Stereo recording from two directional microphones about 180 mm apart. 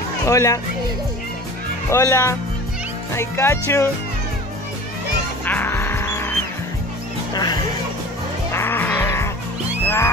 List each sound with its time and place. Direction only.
0.3 s speech: 15° left (ahead or behind)
1.9 s speech: 15° left (ahead or behind)
5.4 s music: 10° left (ahead or behind)
8.5 s music: 15° left (ahead or behind)